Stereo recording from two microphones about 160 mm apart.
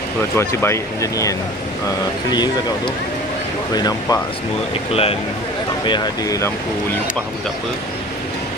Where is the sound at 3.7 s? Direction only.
25° left (ahead or behind).